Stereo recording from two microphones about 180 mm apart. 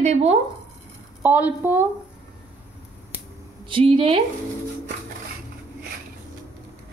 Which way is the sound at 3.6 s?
30° right (ahead or behind).